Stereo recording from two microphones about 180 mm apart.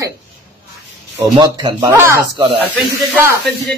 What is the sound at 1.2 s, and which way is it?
A woman's voice, 25° right (ahead or behind).